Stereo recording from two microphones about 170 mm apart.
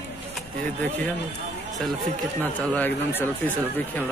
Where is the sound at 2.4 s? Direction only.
10° left (ahead or behind).